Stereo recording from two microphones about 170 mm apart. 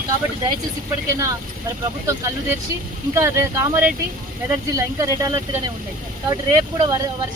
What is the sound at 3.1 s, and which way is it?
Speech, 15° right (ahead or behind).